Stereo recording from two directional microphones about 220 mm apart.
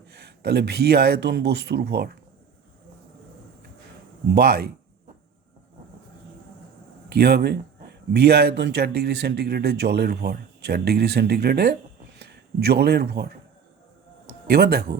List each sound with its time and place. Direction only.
0.0 s speech: 50° right (ahead or behind)
4.3 s speech: 45° right (ahead or behind)
7.1 s speech: 45° right (ahead or behind)